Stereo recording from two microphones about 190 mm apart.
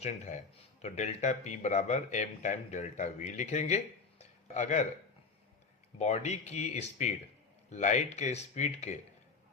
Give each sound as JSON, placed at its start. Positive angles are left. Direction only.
{"t": 0.0, "sound": "speech", "side_deg": 35}
{"t": 4.2, "sound": "a sound", "side_deg": 40}
{"t": 6.0, "sound": "speech", "side_deg": 35}